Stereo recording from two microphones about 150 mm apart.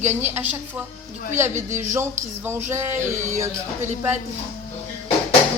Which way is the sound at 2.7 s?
15° right (ahead or behind).